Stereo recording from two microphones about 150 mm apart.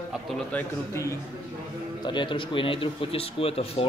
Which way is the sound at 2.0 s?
30° left (ahead or behind).